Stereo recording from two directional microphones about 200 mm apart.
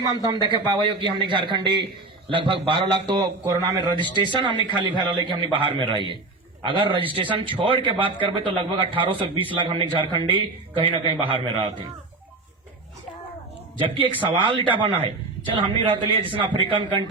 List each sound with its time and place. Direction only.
0.0 s speech: 20° right (ahead or behind)
13.7 s speech: 25° right (ahead or behind)